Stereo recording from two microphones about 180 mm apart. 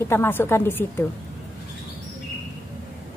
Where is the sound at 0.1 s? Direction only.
10° left (ahead or behind).